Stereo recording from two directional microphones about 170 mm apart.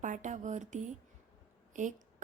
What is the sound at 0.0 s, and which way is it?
A woman's voice, 45° right (ahead or behind).